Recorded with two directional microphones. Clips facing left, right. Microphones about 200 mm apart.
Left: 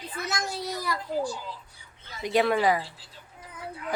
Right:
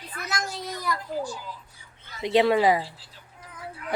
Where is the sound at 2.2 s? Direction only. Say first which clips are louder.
Right 3 dB; 25° right (ahead or behind).